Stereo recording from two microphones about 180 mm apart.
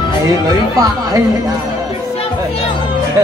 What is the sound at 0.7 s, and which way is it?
Speech, 20° right (ahead or behind).